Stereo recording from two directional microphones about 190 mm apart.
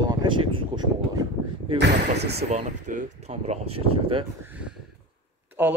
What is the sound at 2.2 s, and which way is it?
Speech, 60° right (ahead or behind).